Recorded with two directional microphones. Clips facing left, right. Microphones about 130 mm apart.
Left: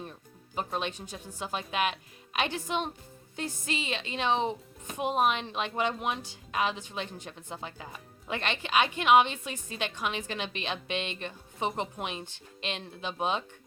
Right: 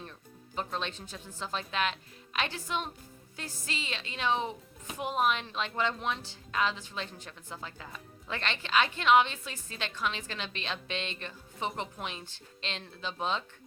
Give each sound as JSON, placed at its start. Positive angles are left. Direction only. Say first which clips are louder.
{"t": 0.0, "sound": "a woman's voice", "louder": "left 3 dB", "side_deg": 15}